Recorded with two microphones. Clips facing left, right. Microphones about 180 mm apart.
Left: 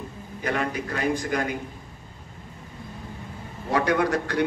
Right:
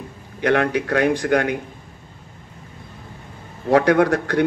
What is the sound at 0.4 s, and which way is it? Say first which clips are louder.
A man's voice: right 9 dB; 75° right (ahead or behind).